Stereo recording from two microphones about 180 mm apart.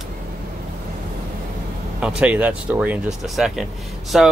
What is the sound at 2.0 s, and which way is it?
Speech, 5° right (ahead or behind).